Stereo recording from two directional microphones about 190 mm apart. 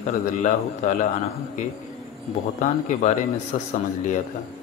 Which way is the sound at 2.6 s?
40° left (ahead or behind).